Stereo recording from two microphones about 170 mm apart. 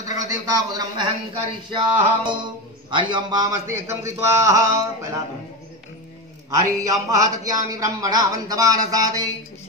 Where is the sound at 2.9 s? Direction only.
25° right (ahead or behind).